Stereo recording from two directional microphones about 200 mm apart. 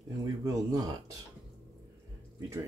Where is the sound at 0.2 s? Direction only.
15° right (ahead or behind).